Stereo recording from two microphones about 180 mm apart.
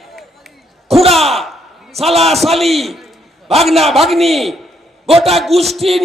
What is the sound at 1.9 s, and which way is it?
Speech, 35° right (ahead or behind).